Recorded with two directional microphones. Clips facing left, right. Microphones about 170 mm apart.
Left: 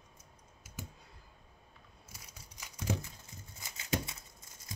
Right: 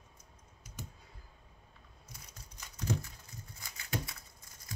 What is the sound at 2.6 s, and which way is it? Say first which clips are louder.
Crumpling: even; 10° left (ahead or behind).